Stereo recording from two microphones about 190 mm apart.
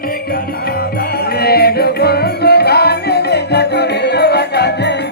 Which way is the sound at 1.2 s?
55° left (ahead or behind).